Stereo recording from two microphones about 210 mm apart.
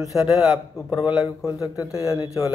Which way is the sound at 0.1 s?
Centre (ahead or behind).